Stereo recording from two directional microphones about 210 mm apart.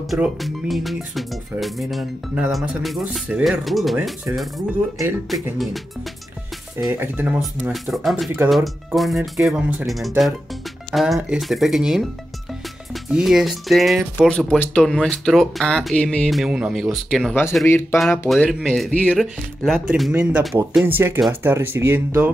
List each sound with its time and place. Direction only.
0.1 s speech: centre (ahead or behind)
5.3 s speech: centre (ahead or behind)
6.8 s speech: 10° right (ahead or behind)